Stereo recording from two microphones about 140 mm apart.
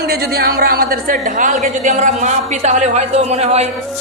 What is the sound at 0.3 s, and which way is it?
A woman's voice, 90° right.